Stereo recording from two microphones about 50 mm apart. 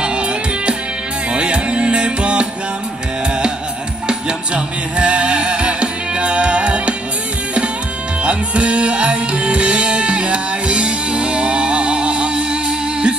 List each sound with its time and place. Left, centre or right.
1.3 s music: centre
4.1 s music: centre
8.2 s music: right